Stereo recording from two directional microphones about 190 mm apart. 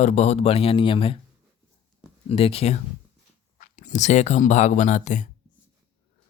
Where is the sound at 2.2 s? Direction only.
30° left (ahead or behind).